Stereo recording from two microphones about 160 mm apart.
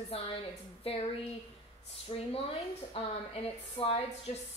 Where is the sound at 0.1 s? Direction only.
40° left (ahead or behind).